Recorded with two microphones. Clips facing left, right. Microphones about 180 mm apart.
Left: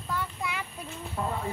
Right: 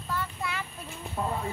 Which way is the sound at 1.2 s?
15° right (ahead or behind).